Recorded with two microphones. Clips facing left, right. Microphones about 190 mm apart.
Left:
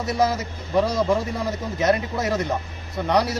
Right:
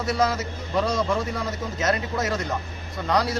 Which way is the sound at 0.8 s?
20° left (ahead or behind).